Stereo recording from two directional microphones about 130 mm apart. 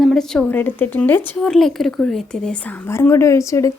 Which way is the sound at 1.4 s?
5° left (ahead or behind).